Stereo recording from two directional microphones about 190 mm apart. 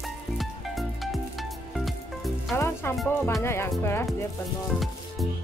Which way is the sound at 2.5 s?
15° left (ahead or behind).